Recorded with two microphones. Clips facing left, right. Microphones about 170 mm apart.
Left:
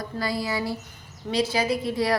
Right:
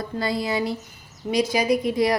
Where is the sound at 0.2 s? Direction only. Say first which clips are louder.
Right 3 dB; 20° right (ahead or behind).